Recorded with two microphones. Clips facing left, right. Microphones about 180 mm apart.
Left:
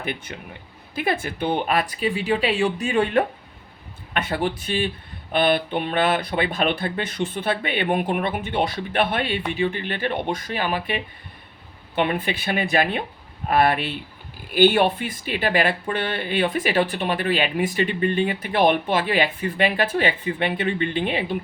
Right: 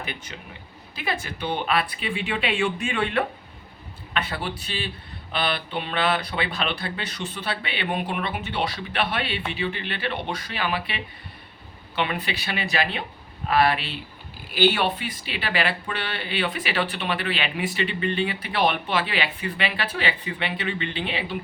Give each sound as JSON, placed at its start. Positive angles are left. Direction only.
{"t": 0.0, "sound": "speech", "side_deg": 55}